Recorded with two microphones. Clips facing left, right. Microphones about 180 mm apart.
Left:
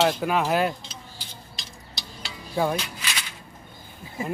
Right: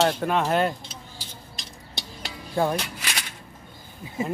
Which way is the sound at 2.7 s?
50° right (ahead or behind).